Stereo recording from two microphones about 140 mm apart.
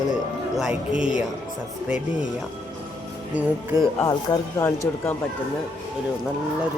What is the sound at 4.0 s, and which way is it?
Speech, 25° left (ahead or behind).